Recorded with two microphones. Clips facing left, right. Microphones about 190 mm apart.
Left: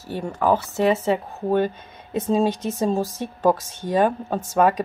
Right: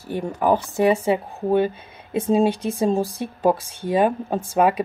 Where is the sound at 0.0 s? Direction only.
15° right (ahead or behind).